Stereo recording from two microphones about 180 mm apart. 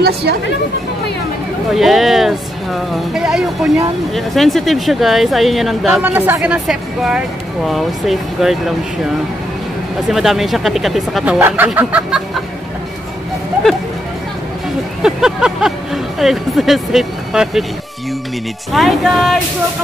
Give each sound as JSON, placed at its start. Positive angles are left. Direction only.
{"t": 0.0, "sound": "speech", "side_deg": -65}
{"t": 1.7, "sound": "speech", "side_deg": 0}
{"t": 10.0, "sound": "speech", "side_deg": 0}
{"t": 15.0, "sound": "speech", "side_deg": -5}
{"t": 18.7, "sound": "speech", "side_deg": 0}